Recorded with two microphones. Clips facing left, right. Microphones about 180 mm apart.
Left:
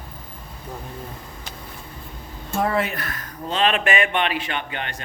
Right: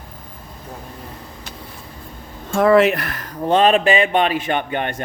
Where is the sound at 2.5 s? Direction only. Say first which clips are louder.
Right 10 dB; 90° right; by 3.5 s 70° right (ahead or behind).